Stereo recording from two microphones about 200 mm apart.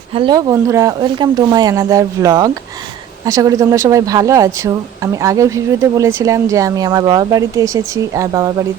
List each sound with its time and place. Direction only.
0.1 s speech: 25° right (ahead or behind)